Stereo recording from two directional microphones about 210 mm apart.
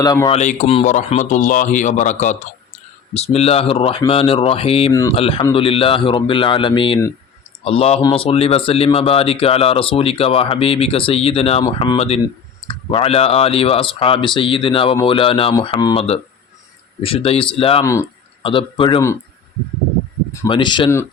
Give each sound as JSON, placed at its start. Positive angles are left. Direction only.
{"t": 0.0, "sound": "speech", "side_deg": 15}
{"t": 0.3, "sound": "speech", "side_deg": 35}
{"t": 4.9, "sound": "speech", "side_deg": 15}
{"t": 5.1, "sound": "speech", "side_deg": 25}
{"t": 20.5, "sound": "speech", "side_deg": 20}